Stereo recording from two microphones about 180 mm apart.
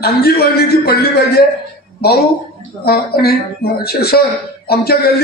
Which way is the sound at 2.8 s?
60° left (ahead or behind).